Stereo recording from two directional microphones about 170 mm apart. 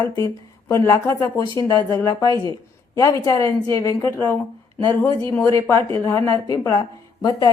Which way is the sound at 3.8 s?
15° left (ahead or behind).